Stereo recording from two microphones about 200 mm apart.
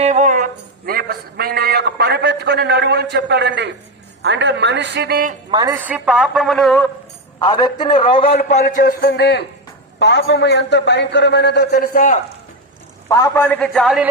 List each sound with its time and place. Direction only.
0.0 s a sound: 35° right (ahead or behind); by 3.8 s 60° right (ahead or behind)
4.2 s a man's voice: 60° right (ahead or behind)
5.5 s a woman's voice: 20° right (ahead or behind)
5.7 s a woman's voice: 10° right (ahead or behind)
7.3 s a man's voice: 20° left (ahead or behind)
8.6 s a man's voice: 50° left (ahead or behind)
13.1 s a man's voice: 15° left (ahead or behind)
13.4 s a woman's voice: 5° left (ahead or behind)